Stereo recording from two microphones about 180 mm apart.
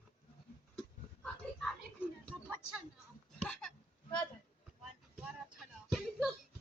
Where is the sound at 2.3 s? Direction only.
5° right (ahead or behind).